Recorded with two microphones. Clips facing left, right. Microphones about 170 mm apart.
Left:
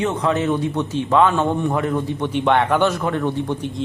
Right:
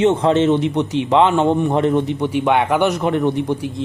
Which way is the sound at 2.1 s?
10° right (ahead or behind).